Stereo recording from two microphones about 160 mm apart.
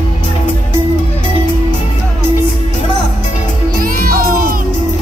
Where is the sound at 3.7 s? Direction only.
65° right (ahead or behind).